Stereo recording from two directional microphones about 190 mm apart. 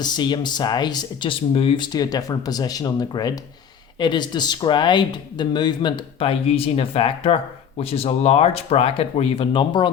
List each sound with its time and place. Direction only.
0.0 s speech: 25° left (ahead or behind)